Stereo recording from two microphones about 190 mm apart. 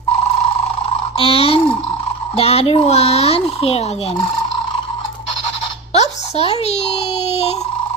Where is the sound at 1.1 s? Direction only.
30° left (ahead or behind).